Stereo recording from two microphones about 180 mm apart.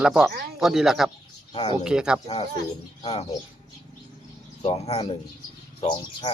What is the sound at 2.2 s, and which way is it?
Speech, 35° left (ahead or behind).